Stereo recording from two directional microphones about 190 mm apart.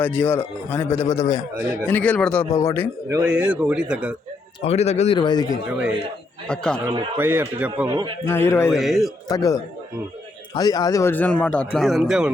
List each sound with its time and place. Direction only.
0.0 s speech: 10° left (ahead or behind)
3.2 s a man's voice: 5° right (ahead or behind)
4.6 s speech: 35° left (ahead or behind)
6.5 s a man's voice: 5° left (ahead or behind)
6.8 s a man's voice: 10° right (ahead or behind)
7.9 s a man's voice: 25° right (ahead or behind)
8.3 s speech: 15° left (ahead or behind)
8.7 s a man's voice: centre (ahead or behind)
9.3 s speech: 20° left (ahead or behind); by 12.3 s centre (ahead or behind)